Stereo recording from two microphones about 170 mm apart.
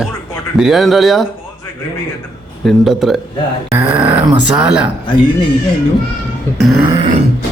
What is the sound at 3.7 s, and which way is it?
Grunt, 15° right (ahead or behind).